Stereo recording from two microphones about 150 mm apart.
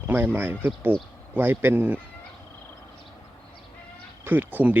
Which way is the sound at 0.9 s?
90° left.